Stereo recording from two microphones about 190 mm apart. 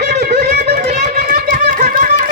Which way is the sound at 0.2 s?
55° right (ahead or behind).